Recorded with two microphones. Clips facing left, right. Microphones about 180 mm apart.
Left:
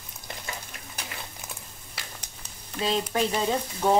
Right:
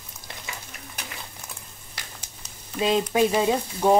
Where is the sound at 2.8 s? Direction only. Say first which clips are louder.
Right 5 dB; 15° right (ahead or behind).